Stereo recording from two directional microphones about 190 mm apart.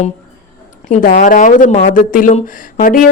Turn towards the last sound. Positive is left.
turn(degrees=45)  # may be behind; listen again after turning